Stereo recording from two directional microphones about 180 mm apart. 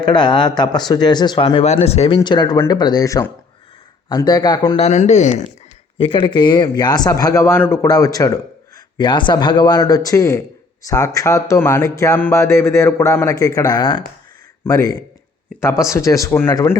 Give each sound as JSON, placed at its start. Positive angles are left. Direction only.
{"t": 0.2, "sound": "speech", "side_deg": 25}
{"t": 4.8, "sound": "speech", "side_deg": 40}
{"t": 6.0, "sound": "speech", "side_deg": 30}